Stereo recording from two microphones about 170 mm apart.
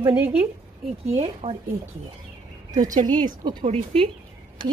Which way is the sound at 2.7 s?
50° right (ahead or behind).